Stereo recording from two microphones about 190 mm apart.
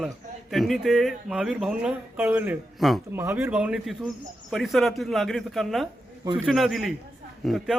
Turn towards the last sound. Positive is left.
turn(degrees=0)  # may be behind; listen again after turning